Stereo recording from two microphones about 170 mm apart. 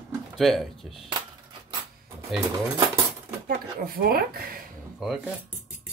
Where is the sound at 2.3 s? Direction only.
Centre (ahead or behind).